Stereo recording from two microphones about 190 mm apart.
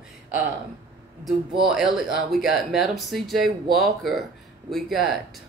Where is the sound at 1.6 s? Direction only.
Centre (ahead or behind).